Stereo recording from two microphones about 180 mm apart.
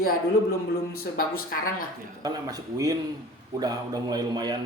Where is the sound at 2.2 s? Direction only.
20° right (ahead or behind).